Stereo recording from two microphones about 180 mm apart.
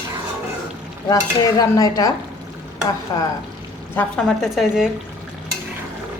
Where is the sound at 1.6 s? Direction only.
20° left (ahead or behind).